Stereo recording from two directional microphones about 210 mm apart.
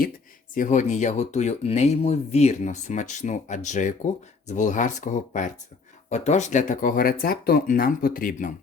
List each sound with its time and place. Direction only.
0.5 s speech: 35° left (ahead or behind)